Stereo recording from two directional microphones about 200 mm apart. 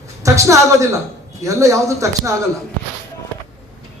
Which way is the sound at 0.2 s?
15° right (ahead or behind).